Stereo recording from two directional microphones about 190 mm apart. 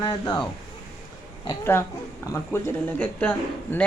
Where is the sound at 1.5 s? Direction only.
10° left (ahead or behind).